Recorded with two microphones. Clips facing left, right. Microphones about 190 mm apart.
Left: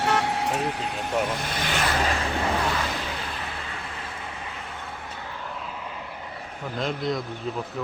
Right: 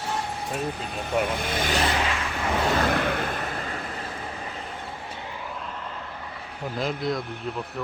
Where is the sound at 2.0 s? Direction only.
35° left (ahead or behind).